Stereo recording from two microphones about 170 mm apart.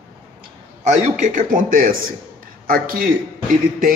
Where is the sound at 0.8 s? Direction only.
45° right (ahead or behind).